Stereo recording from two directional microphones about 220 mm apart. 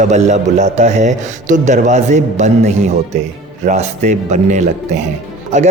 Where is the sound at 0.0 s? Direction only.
30° right (ahead or behind).